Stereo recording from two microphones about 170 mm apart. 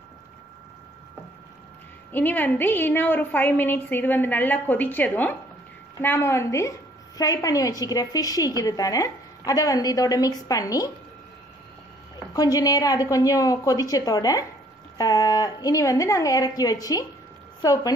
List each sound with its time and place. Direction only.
2.1 s a woman's voice: 10° left (ahead or behind)
12.4 s a woman's voice: 20° left (ahead or behind)